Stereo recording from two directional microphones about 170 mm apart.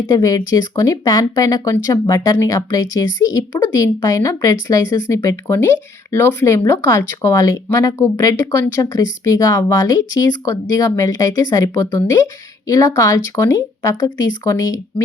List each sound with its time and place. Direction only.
0.1 s speech: 20° left (ahead or behind)